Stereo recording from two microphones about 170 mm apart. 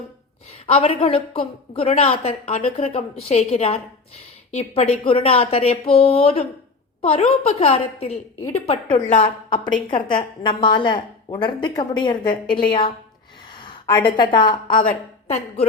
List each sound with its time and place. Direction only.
0.7 s a woman's voice: 35° left (ahead or behind)
9.9 s a woman's voice: 30° left (ahead or behind)